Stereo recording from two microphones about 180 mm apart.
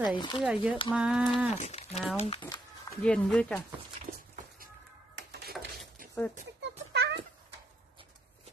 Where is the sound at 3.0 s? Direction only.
5° left (ahead or behind).